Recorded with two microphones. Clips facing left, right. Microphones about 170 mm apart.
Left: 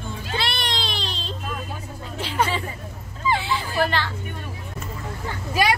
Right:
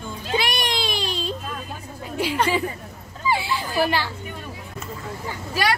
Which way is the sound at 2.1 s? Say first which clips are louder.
Right 7 dB; 10° right (ahead or behind).